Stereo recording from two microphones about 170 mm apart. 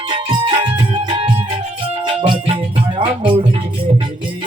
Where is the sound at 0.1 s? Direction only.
30° right (ahead or behind).